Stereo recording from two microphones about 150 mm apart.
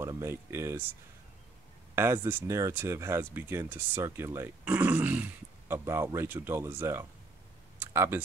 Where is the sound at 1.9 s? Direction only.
15° right (ahead or behind).